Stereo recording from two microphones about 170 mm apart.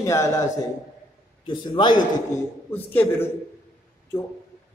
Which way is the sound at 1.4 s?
30° left (ahead or behind).